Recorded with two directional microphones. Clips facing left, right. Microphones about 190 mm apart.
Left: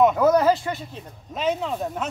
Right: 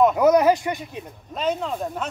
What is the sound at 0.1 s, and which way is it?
Speech, 15° right (ahead or behind).